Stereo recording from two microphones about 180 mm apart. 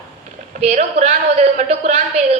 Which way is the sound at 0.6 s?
40° right (ahead or behind).